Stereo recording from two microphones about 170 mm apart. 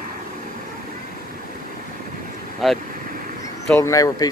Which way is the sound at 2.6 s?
Centre (ahead or behind).